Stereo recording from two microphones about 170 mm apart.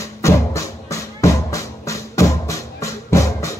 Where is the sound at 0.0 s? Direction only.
15° left (ahead or behind).